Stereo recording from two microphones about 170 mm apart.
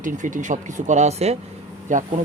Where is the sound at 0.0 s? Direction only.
50° right (ahead or behind).